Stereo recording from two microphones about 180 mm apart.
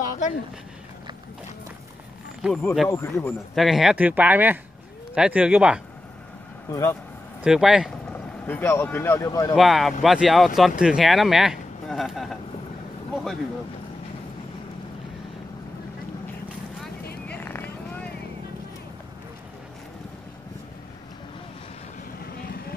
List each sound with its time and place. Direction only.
0.0 s a sound: 50° left (ahead or behind)
2.4 s speech: centre (ahead or behind)
2.9 s speech: 15° left (ahead or behind)
3.5 s speech: centre (ahead or behind)
6.7 s speech: 15° left (ahead or behind)
7.4 s speech: 5° right (ahead or behind)
8.1 s speech: 10° left (ahead or behind)
9.6 s a man's voice: centre (ahead or behind)
17.0 s vehicle: 60° left (ahead or behind)
17.4 s vehicle: 10° left (ahead or behind)
22.2 s vehicle: 60° left (ahead or behind)